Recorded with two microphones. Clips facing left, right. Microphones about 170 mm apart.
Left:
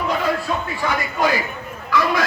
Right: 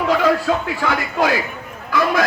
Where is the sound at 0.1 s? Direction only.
90° right.